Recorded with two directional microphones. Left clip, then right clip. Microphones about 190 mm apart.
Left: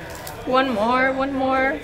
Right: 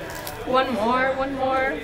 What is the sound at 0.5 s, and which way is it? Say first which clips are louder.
Speech: left 2 dB; centre (ahead or behind).